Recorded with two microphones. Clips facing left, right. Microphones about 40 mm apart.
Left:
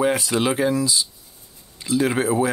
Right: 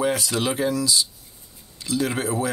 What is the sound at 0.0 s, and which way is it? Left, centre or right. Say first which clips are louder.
Speech: left 3 dB; left.